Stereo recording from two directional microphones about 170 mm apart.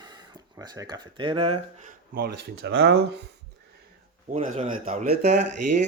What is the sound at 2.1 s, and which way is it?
Speech, 65° right (ahead or behind).